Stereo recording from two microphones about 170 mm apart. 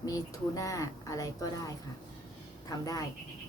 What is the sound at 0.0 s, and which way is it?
Speech, 20° left (ahead or behind).